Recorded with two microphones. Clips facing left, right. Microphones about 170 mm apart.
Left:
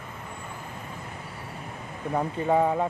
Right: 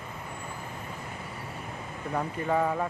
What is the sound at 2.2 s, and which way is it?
Speech, 20° left (ahead or behind).